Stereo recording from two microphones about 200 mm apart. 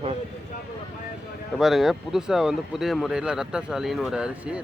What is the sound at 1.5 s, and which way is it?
Speech, centre (ahead or behind).